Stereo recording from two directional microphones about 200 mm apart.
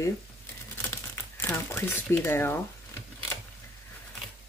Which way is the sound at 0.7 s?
10° left (ahead or behind).